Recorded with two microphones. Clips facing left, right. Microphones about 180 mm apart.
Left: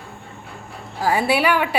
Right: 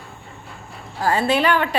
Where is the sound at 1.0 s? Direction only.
10° left (ahead or behind).